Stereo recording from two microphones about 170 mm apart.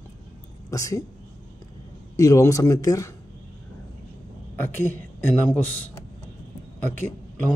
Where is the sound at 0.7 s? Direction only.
20° left (ahead or behind).